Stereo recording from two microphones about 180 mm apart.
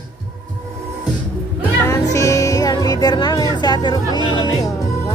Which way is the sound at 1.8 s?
15° left (ahead or behind).